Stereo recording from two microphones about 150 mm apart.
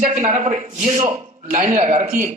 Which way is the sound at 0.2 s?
50° right (ahead or behind).